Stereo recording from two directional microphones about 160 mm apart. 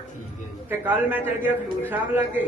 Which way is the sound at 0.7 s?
10° right (ahead or behind).